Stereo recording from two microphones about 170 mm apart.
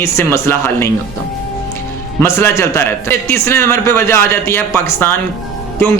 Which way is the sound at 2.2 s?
15° left (ahead or behind).